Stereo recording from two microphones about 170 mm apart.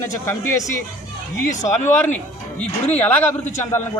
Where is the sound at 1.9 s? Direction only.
10° left (ahead or behind).